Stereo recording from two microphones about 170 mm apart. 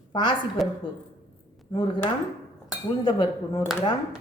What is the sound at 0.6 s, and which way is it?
Speech, centre (ahead or behind).